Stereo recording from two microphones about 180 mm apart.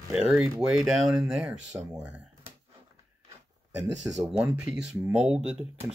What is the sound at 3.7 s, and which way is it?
Speech, 5° right (ahead or behind).